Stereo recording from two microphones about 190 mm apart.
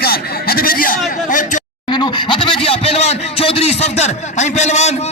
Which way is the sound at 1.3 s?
40° left (ahead or behind).